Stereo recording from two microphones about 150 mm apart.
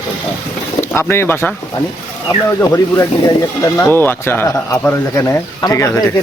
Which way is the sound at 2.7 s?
25° left (ahead or behind).